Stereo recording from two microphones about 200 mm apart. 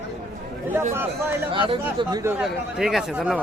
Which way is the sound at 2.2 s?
10° right (ahead or behind).